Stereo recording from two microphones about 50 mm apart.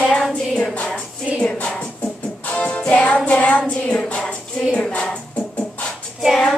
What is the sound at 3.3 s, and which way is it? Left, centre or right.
Child singing, left.